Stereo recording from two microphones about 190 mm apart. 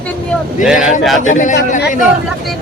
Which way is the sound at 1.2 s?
40° left (ahead or behind).